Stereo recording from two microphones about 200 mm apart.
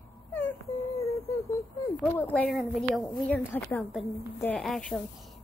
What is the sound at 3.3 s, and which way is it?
A woman's voice, 10° left (ahead or behind).